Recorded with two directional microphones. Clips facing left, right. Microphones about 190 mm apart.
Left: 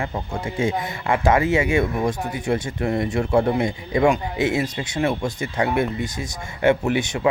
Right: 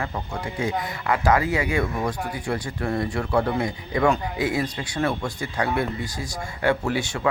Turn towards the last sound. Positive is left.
turn(degrees=20)  # may be behind; listen again after turning